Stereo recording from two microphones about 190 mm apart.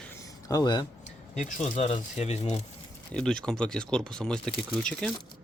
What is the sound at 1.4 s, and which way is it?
Speech, 40° left (ahead or behind).